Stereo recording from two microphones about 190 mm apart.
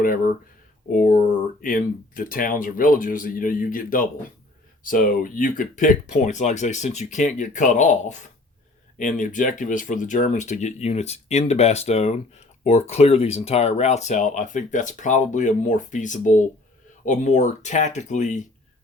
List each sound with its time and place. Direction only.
0.9 s speech: 45° left (ahead or behind)